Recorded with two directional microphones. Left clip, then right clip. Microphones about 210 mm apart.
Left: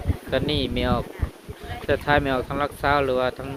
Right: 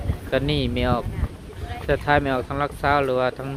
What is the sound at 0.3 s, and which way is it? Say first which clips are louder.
Speech: right 1 dB; 5° right (ahead or behind).